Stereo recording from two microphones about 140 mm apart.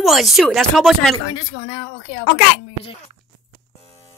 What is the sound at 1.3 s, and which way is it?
Speech, 40° left (ahead or behind).